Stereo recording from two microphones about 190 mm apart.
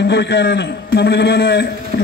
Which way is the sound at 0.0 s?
65° left (ahead or behind).